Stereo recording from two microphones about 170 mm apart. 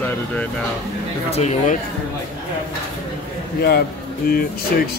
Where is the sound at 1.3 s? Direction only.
40° left (ahead or behind).